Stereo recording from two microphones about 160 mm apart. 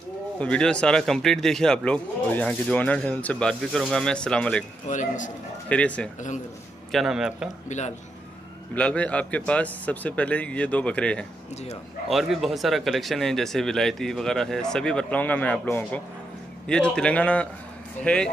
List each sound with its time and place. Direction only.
0.4 s speech: 5° left (ahead or behind)
4.8 s a man's voice: 50° left (ahead or behind)
5.7 s a man's voice: 10° left (ahead or behind)
8.7 s a man's voice: 10° left (ahead or behind)